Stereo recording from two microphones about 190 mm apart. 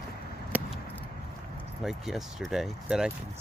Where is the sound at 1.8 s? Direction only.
Centre (ahead or behind).